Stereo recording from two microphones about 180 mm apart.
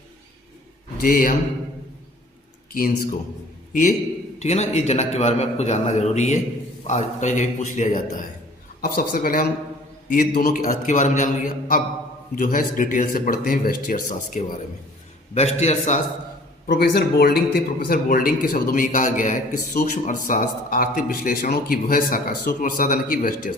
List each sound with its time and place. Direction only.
0.9 s a man's voice: 50° left (ahead or behind)
2.7 s a man's voice: 50° left (ahead or behind)
8.8 s a man's voice: 55° left (ahead or behind)
16.6 s a man's voice: 65° left (ahead or behind)